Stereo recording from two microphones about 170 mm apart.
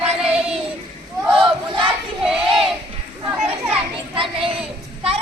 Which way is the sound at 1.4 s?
30° right (ahead or behind).